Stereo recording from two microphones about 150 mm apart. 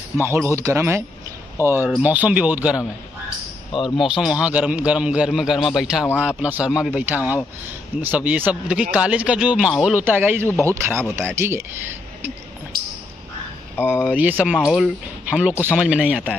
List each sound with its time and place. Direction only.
0.2 s speech: 15° right (ahead or behind)
3.9 s a man's voice: centre (ahead or behind)
14.0 s a man's voice: 10° right (ahead or behind)